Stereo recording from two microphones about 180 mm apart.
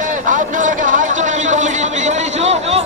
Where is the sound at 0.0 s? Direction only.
45° right (ahead or behind).